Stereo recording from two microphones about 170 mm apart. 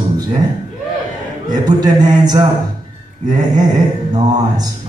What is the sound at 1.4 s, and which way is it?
A man's voice, 25° right (ahead or behind).